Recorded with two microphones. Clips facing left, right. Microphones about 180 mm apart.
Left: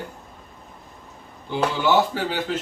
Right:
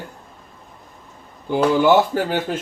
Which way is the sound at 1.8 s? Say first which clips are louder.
Right 5 dB; 50° right (ahead or behind).